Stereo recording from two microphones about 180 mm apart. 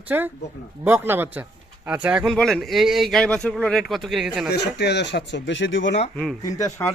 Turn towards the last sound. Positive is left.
turn(degrees=20)  # may be behind; listen again after turning